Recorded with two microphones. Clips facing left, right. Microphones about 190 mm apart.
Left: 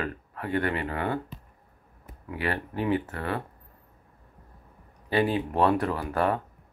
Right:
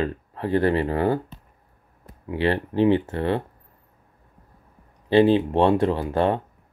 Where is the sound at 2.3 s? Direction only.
30° right (ahead or behind).